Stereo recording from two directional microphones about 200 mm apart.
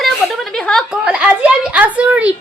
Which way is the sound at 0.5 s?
Centre (ahead or behind).